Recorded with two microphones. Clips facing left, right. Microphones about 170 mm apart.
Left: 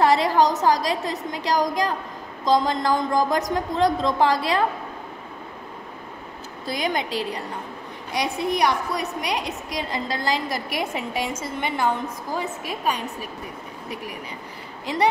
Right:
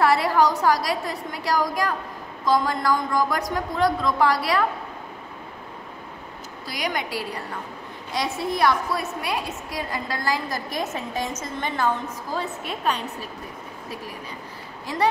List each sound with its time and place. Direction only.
0.0 s a woman's voice: 20° left (ahead or behind)
6.6 s a woman's voice: 25° left (ahead or behind)